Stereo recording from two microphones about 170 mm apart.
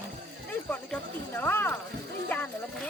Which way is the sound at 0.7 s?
10° left (ahead or behind).